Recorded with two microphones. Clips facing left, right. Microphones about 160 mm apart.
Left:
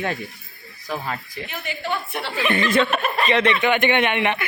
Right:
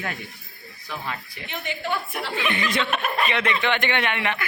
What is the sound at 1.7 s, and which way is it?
Speech, 20° right (ahead or behind).